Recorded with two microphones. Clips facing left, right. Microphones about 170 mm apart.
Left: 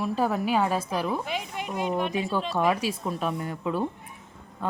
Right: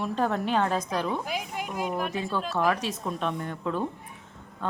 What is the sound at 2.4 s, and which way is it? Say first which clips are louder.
A woman's voice: even; centre (ahead or behind).